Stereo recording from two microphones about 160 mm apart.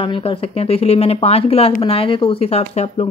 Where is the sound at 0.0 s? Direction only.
30° left (ahead or behind).